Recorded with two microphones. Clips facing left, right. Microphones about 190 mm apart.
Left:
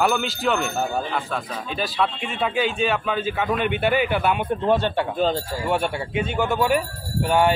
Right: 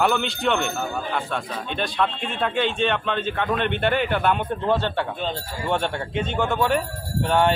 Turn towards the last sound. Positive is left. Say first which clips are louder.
# left 1 dB
turn(degrees=10)  # may be behind; listen again after turning